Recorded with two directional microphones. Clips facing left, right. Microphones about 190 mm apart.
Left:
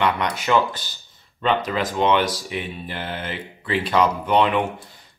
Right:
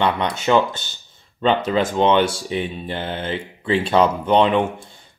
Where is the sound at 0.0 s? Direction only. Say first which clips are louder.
Right 2 dB; 25° right (ahead or behind).